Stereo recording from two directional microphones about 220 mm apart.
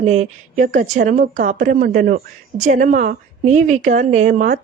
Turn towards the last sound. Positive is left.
turn(degrees=-35)  # may be behind; listen again after turning